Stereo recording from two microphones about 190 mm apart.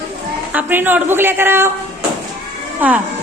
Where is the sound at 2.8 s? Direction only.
10° right (ahead or behind).